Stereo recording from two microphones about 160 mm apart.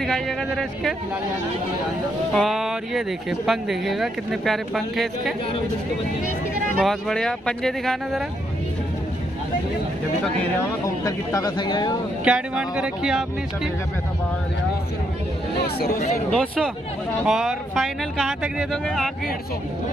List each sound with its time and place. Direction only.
0.0 s speech: centre (ahead or behind)
2.3 s speech: centre (ahead or behind)
6.8 s speech: centre (ahead or behind)
11.1 s speech: 20° left (ahead or behind)
12.3 s speech: 5° right (ahead or behind)
16.3 s speech: 5° left (ahead or behind)